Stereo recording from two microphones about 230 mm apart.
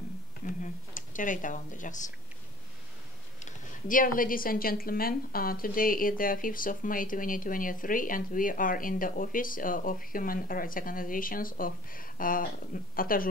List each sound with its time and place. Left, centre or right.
0.6 s speech: left
3.4 s speech: left